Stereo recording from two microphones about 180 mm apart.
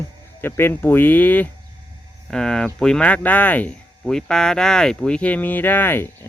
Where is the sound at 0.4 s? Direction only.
15° left (ahead or behind).